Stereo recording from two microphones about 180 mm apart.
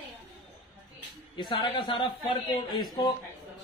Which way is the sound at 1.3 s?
30° left (ahead or behind).